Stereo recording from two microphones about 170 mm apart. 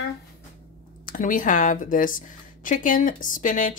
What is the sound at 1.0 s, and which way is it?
A woman's voice, 55° left (ahead or behind).